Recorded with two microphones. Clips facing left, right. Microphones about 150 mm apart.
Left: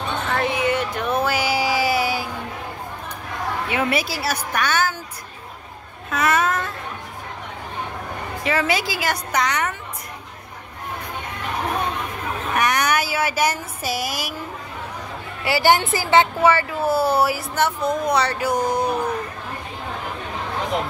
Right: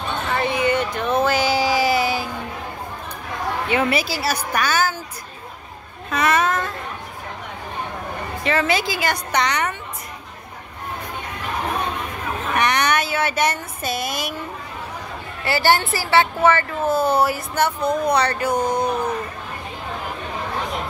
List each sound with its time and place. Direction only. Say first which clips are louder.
0.3 s a sound: right 1 dB; centre (ahead or behind)
3.7 s speech: right 2 dB; centre (ahead or behind)
6.0 s a sound: right 1 dB; 5° left (ahead or behind)
8.5 s speech: right 1 dB; 10° left (ahead or behind)
12.5 s speech: right 1 dB; centre (ahead or behind)
15.4 s a woman's voice: left 1 dB; 15° left (ahead or behind)